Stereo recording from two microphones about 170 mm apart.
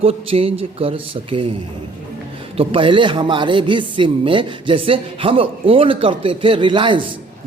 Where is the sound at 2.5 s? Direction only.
30° right (ahead or behind).